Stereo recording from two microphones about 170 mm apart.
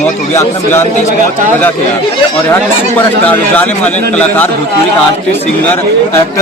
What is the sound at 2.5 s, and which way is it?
A man's voice, 10° left (ahead or behind).